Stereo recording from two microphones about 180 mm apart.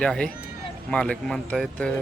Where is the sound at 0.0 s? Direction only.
5° left (ahead or behind).